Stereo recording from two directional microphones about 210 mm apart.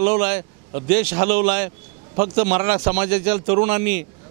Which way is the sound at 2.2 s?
35° right (ahead or behind).